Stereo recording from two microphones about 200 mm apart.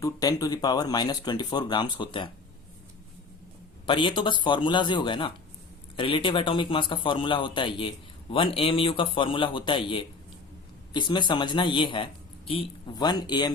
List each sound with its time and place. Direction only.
0.0 s a man's voice: 20° left (ahead or behind)
3.8 s a man's voice: 25° left (ahead or behind)